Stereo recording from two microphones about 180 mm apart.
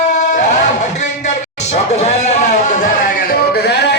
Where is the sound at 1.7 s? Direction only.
40° left (ahead or behind).